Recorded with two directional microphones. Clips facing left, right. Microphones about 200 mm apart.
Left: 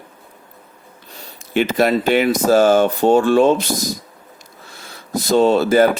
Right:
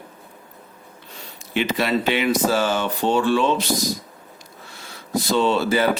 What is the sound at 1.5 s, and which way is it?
Speech, 45° left (ahead or behind).